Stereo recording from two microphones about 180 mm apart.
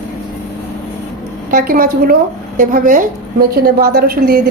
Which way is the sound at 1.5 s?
50° right (ahead or behind).